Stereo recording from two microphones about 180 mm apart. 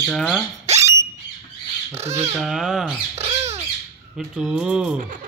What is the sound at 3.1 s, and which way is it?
Squawk, 35° right (ahead or behind).